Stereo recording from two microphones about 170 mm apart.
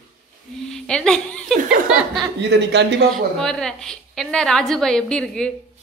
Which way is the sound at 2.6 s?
90° right.